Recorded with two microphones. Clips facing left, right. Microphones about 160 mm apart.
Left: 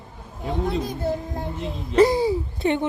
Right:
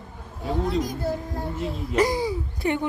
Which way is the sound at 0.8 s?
25° left (ahead or behind).